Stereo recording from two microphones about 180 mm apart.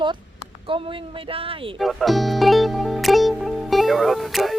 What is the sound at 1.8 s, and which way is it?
Music, centre (ahead or behind).